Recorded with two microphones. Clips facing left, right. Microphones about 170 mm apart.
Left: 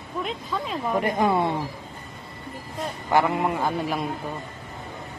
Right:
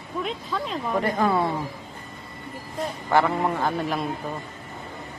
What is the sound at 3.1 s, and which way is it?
Speech, 10° left (ahead or behind).